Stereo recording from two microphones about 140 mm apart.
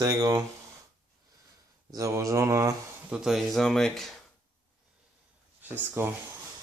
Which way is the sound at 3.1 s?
5° right (ahead or behind).